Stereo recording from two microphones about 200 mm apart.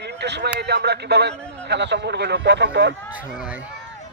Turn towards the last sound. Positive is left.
turn(degrees=-5)  # may be behind; listen again after turning